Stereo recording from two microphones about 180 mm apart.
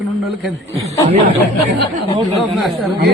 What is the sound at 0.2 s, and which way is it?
Speech, centre (ahead or behind).